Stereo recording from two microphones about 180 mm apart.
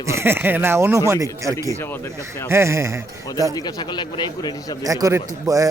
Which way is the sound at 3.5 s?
20° left (ahead or behind).